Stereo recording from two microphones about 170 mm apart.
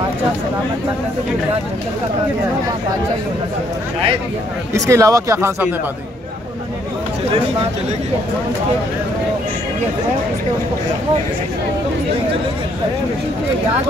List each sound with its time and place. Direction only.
4.7 s speech: 20° right (ahead or behind)